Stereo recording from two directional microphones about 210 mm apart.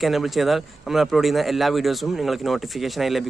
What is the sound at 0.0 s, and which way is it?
A man's voice, centre (ahead or behind).